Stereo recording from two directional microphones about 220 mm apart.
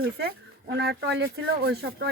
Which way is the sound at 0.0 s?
45° right (ahead or behind).